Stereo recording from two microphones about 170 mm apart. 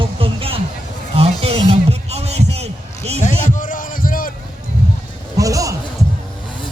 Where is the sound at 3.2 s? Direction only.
50° left (ahead or behind).